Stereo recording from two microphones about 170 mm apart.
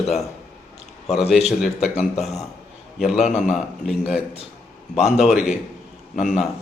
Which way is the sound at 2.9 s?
5° right (ahead or behind).